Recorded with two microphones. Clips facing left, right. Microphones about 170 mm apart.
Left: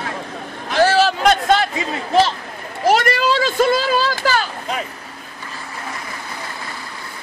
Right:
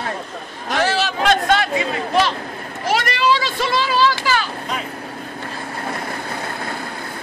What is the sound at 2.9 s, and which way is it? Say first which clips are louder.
Children playing: left 3 dB; 45° left (ahead or behind).